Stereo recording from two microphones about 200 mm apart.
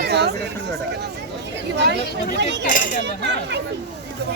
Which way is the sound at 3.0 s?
60° right (ahead or behind).